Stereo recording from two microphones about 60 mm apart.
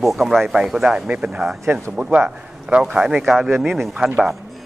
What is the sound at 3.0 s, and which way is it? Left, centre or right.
Speech, centre.